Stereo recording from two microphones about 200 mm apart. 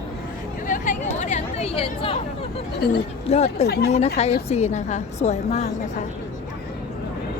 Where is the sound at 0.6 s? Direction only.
40° left (ahead or behind).